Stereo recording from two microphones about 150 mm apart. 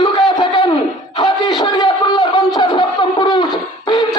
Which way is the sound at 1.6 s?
30° left (ahead or behind).